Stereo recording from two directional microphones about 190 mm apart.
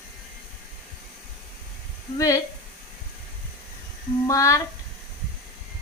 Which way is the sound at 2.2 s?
15° left (ahead or behind).